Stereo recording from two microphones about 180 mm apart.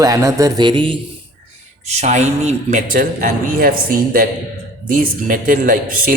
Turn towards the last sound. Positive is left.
turn(degrees=-50)  # may be behind; listen again after turning